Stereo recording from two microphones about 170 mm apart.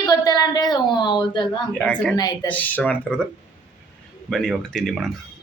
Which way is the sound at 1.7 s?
5° left (ahead or behind).